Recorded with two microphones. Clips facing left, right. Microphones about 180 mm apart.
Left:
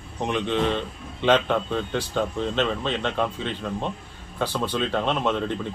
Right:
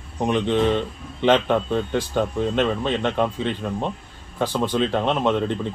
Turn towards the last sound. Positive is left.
turn(degrees=-20)  # may be behind; listen again after turning